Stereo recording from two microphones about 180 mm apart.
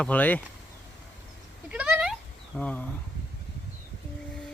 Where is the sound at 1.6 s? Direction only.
5° right (ahead or behind).